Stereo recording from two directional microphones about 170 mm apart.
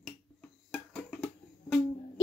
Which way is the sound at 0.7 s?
Centre (ahead or behind).